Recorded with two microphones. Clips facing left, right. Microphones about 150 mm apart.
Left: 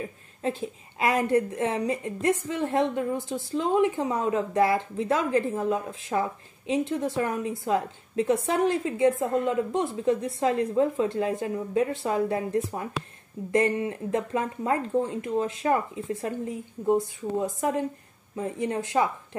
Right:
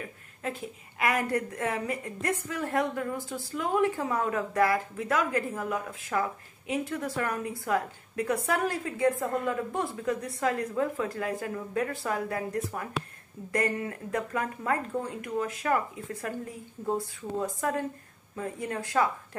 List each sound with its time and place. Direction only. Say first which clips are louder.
0.0 s a woman's voice: left 6 dB; 25° left (ahead or behind)